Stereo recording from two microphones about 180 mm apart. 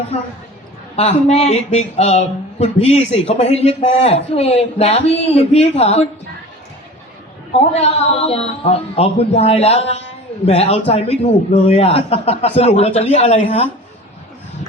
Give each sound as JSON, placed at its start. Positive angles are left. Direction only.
{"t": 0.9, "sound": "a man's voice", "side_deg": 35}
{"t": 7.7, "sound": "a man's voice", "side_deg": 35}